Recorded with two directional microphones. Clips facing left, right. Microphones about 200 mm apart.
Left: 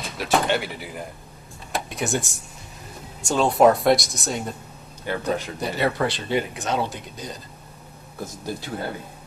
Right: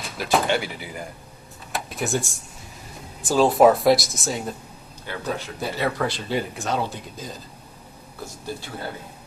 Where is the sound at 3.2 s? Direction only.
Centre (ahead or behind).